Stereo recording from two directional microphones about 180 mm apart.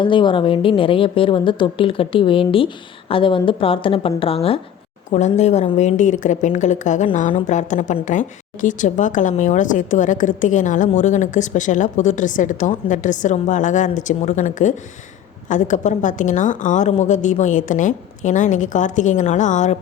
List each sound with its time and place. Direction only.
0.0 s a woman's voice: 25° left (ahead or behind); by 19.7 s 40° left (ahead or behind)